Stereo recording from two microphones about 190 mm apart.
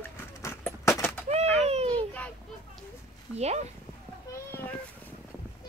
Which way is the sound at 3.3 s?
35° right (ahead or behind).